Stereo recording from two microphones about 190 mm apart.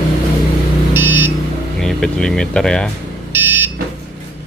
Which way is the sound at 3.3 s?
10° right (ahead or behind).